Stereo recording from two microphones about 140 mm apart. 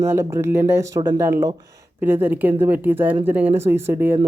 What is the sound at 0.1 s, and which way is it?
Speech, 20° right (ahead or behind).